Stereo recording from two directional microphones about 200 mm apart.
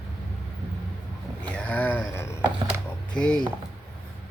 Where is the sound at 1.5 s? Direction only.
5° left (ahead or behind).